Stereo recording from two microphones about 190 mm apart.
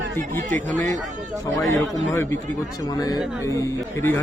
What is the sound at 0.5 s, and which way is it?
Speech, 40° right (ahead or behind).